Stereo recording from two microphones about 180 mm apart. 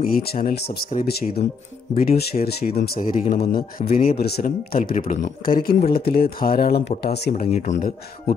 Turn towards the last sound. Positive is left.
turn(degrees=40)  # may be behind; listen again after turning